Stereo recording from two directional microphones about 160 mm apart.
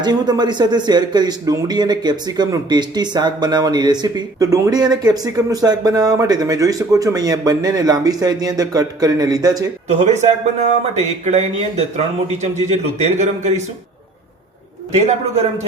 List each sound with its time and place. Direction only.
0.0 s speech: 25° right (ahead or behind)
10.0 s a man's voice: 45° right (ahead or behind)
14.9 s a man's voice: 40° right (ahead or behind)